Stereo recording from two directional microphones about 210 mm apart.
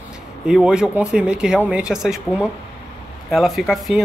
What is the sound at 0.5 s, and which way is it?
Speech, 5° right (ahead or behind).